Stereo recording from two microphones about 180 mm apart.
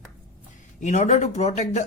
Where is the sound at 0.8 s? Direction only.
40° left (ahead or behind).